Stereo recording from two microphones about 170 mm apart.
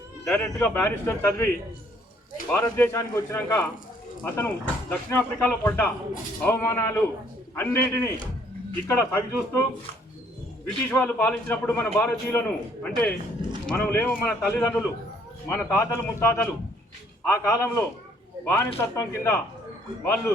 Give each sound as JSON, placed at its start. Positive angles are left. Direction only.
{"t": 0.3, "sound": "speech", "side_deg": 10}
{"t": 2.5, "sound": "speech", "side_deg": 10}
{"t": 10.9, "sound": "speech", "side_deg": 10}